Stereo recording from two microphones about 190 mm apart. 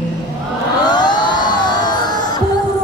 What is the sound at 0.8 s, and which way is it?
Music, 20° left (ahead or behind).